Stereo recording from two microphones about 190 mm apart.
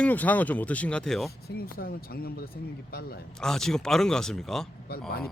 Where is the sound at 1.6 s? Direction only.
50° left (ahead or behind).